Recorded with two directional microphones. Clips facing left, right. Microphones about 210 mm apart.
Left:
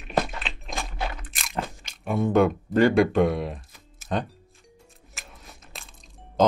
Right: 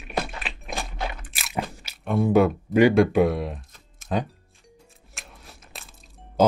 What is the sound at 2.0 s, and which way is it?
Speech, 5° right (ahead or behind).